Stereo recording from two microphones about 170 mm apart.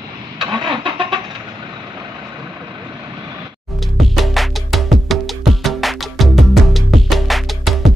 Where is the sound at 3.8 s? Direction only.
Centre (ahead or behind).